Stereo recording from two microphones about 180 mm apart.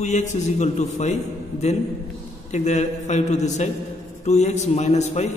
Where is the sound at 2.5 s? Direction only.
40° left (ahead or behind).